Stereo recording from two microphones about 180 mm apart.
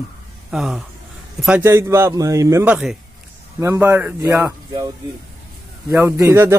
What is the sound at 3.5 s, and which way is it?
A man's voice, 15° right (ahead or behind).